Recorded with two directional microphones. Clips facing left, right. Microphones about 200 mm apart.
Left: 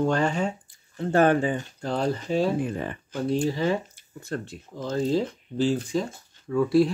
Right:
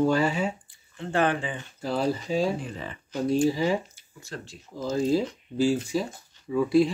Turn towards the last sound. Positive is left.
turn(degrees=0)  # may be behind; listen again after turning